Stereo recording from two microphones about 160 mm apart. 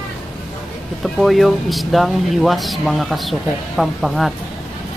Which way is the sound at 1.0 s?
Centre (ahead or behind).